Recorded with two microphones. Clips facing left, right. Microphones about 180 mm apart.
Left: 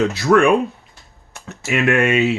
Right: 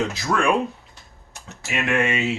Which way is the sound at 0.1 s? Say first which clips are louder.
Left 8 dB; 65° left (ahead or behind).